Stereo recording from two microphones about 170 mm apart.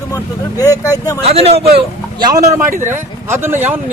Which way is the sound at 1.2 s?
35° right (ahead or behind).